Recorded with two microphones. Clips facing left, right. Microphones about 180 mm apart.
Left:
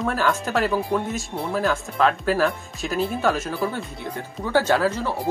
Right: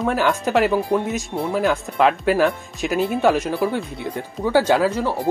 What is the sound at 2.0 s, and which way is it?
Speech, 5° right (ahead or behind).